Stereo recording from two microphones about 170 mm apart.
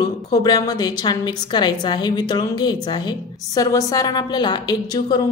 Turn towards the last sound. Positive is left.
turn(degrees=25)  # may be behind; listen again after turning